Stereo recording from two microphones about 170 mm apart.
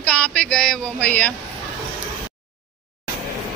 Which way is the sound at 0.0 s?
5° left (ahead or behind).